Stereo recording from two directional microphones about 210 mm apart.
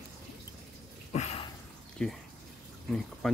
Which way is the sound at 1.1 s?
30° left (ahead or behind).